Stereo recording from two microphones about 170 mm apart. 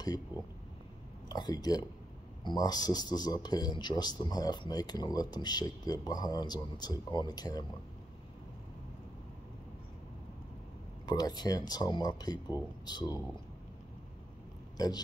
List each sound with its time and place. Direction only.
1.3 s speech: 25° left (ahead or behind)
11.1 s speech: 25° left (ahead or behind)